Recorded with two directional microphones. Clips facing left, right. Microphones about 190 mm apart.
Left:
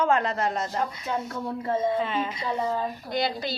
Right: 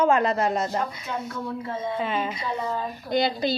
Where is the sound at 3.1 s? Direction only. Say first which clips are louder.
Right 8 dB; 20° right (ahead or behind).